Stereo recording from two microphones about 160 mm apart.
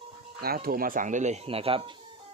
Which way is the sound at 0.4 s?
70° right (ahead or behind).